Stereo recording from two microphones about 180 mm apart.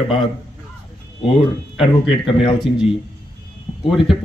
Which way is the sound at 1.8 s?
30° left (ahead or behind).